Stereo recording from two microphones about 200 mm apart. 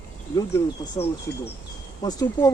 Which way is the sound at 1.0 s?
20° left (ahead or behind).